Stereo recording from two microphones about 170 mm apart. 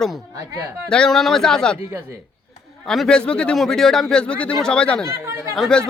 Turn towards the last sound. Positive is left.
turn(degrees=0)  # may be behind; listen again after turning